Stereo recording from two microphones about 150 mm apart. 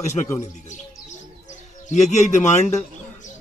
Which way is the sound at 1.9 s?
55° left (ahead or behind).